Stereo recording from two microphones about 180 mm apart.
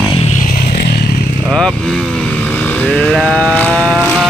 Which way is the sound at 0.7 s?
65° left (ahead or behind).